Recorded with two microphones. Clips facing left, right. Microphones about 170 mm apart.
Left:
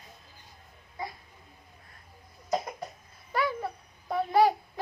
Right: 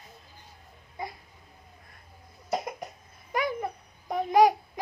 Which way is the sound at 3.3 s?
15° right (ahead or behind).